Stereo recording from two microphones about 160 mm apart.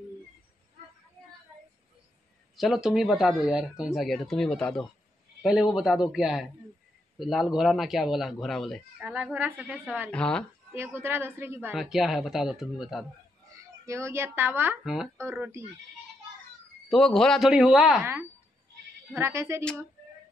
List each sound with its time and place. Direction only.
2.5 s a man's voice: centre (ahead or behind)
9.0 s a woman's voice: 10° right (ahead or behind)
10.1 s speech: 5° left (ahead or behind)
10.7 s a woman's voice: 15° right (ahead or behind)
11.7 s speech: centre (ahead or behind)
13.5 s a woman's voice: 20° right (ahead or behind)
16.9 s speech: 5° left (ahead or behind)
19.1 s a woman's voice: 15° right (ahead or behind)